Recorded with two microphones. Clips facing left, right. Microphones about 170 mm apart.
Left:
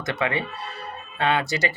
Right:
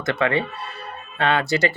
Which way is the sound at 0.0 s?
15° left (ahead or behind).